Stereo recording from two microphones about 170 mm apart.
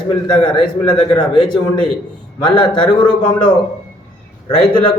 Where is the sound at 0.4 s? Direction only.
25° left (ahead or behind).